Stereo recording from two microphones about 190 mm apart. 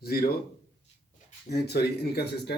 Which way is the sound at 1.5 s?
55° left (ahead or behind).